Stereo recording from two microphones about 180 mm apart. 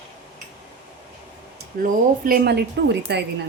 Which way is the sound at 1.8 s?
55° right (ahead or behind).